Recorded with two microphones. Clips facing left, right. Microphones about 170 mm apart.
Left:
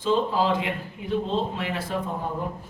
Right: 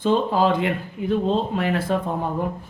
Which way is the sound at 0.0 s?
55° right (ahead or behind).